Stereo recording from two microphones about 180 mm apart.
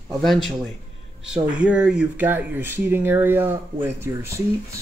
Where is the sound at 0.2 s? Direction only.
Centre (ahead or behind).